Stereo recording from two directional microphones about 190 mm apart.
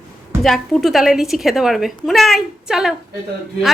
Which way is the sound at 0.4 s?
Centre (ahead or behind).